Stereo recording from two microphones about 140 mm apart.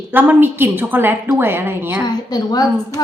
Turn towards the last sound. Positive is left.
turn(degrees=30)  # may be behind; listen again after turning